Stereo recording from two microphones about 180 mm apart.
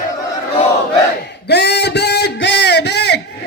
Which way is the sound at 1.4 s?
65° left (ahead or behind).